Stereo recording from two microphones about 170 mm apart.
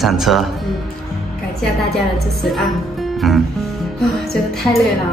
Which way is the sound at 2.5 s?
Centre (ahead or behind).